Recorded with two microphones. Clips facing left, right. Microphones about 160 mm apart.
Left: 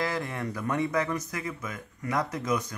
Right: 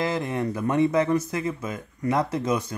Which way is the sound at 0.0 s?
20° right (ahead or behind).